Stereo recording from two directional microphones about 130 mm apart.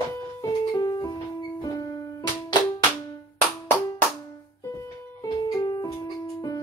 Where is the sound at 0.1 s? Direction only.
30° left (ahead or behind).